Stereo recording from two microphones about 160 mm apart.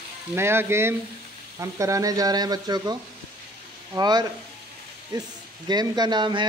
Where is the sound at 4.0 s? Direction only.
25° right (ahead or behind).